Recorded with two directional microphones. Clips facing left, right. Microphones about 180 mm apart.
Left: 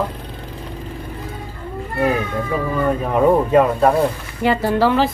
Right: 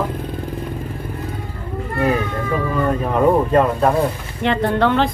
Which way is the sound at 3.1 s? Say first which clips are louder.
Left 1 dB; 5° left (ahead or behind).